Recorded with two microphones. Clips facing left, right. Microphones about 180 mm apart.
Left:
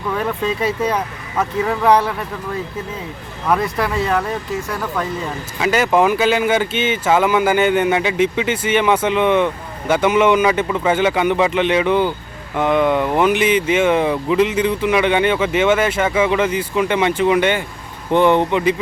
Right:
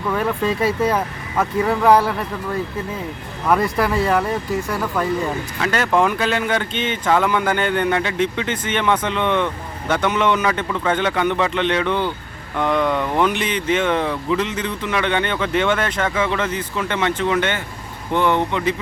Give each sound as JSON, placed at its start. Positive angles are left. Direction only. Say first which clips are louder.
{"t": 0.1, "sound": "speech", "louder": "even", "side_deg": 0}
{"t": 3.4, "sound": "speech", "louder": "right 1 dB", "side_deg": 0}
{"t": 5.5, "sound": "speech", "louder": "left 4 dB", "side_deg": 10}